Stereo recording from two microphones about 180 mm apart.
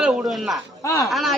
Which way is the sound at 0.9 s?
15° left (ahead or behind).